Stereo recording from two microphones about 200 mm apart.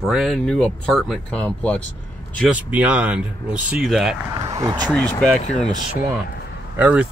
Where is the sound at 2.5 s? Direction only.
10° right (ahead or behind).